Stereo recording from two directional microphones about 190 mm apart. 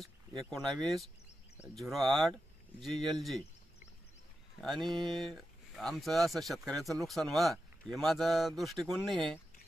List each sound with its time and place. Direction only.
0.4 s speech: 5° left (ahead or behind)
4.6 s speech: centre (ahead or behind)
4.8 s speech: 25° right (ahead or behind)
5.1 s speech: centre (ahead or behind)